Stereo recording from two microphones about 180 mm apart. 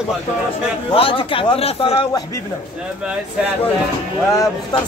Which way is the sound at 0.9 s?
30° left (ahead or behind).